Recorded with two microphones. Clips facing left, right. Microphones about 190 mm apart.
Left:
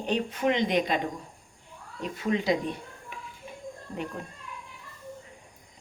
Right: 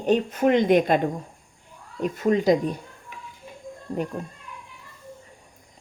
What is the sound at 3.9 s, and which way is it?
Speech, 35° right (ahead or behind).